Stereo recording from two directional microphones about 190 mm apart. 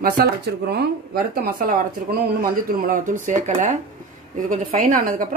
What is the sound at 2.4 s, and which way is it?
Speech, 50° right (ahead or behind).